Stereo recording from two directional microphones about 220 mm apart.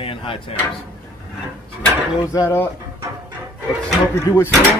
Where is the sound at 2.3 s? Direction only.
10° left (ahead or behind).